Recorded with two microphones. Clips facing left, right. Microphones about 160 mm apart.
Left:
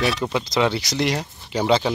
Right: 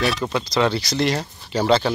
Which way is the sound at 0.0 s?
15° left (ahead or behind).